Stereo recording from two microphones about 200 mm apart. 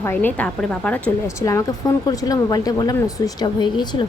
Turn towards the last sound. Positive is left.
turn(degrees=20)  # may be behind; listen again after turning